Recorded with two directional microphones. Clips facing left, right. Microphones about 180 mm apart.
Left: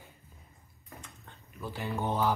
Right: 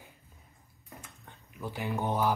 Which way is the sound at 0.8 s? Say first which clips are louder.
Even; 15° right (ahead or behind).